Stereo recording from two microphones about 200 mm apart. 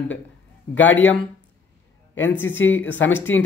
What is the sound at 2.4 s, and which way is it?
A woman's voice, 10° left (ahead or behind).